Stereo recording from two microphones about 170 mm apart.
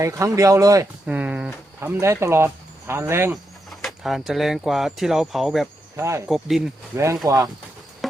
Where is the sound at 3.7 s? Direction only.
Centre (ahead or behind).